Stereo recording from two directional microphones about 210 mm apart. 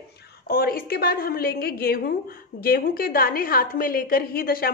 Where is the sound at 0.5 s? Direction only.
45° left (ahead or behind).